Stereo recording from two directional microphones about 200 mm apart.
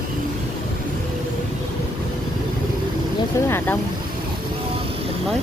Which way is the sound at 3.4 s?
10° left (ahead or behind).